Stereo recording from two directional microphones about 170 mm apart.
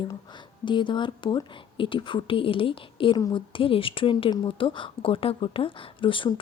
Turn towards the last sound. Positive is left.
turn(degrees=30)  # may be behind; listen again after turning